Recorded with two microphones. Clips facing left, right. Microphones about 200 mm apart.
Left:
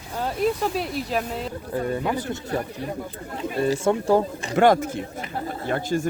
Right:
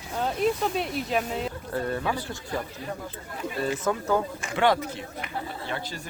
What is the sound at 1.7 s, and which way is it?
Speech, 15° left (ahead or behind).